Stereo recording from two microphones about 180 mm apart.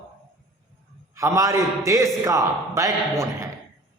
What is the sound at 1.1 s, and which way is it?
A man's voice, 15° right (ahead or behind).